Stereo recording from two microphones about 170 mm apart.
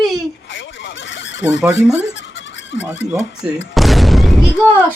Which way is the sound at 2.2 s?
90° left.